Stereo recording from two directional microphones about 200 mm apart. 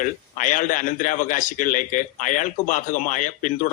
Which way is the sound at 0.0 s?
40° left (ahead or behind).